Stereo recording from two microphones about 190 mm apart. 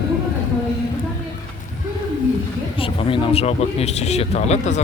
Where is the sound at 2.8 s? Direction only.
30° left (ahead or behind).